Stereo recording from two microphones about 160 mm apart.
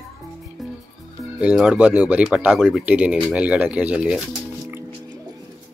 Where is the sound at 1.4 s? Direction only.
10° right (ahead or behind).